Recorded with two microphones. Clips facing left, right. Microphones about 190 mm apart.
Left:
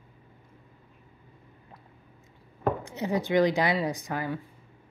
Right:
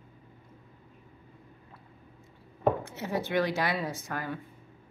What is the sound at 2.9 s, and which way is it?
Speech, 15° left (ahead or behind).